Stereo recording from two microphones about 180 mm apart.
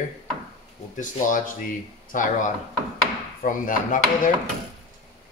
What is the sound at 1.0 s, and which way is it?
Speech, 45° left (ahead or behind).